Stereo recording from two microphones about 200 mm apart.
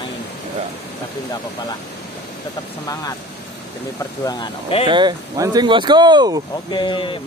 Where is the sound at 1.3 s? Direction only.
20° left (ahead or behind).